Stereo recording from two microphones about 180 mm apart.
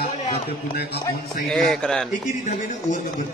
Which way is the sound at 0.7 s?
65° left (ahead or behind).